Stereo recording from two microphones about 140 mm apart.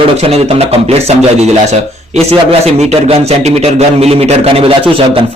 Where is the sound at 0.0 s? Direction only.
45° right (ahead or behind).